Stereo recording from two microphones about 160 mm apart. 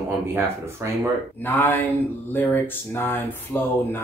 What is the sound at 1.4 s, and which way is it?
Speech, 15° left (ahead or behind).